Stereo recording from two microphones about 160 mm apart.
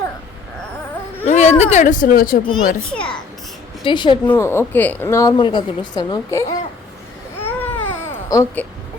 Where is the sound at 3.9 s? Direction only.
30° left (ahead or behind).